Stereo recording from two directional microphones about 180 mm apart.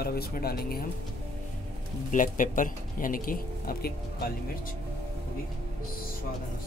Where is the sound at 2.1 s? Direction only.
45° left (ahead or behind).